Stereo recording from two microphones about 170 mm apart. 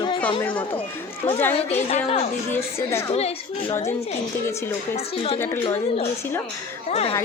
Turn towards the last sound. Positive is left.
turn(degrees=35)  # may be behind; listen again after turning